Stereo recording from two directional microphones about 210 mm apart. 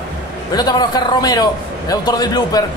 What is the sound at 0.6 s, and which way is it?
Speech, 20° left (ahead or behind).